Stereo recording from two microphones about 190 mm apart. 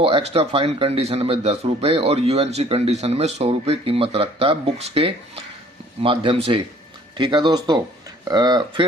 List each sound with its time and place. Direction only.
0.0 s a man's voice: 30° right (ahead or behind)